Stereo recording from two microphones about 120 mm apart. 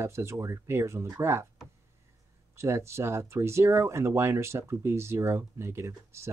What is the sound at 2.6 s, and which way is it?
Speech, 20° right (ahead or behind).